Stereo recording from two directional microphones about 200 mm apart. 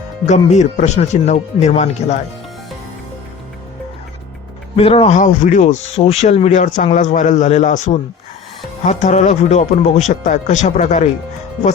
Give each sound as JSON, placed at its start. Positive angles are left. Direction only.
{"t": 0.3, "sound": "speech", "side_deg": 35}
{"t": 4.8, "sound": "speech", "side_deg": 30}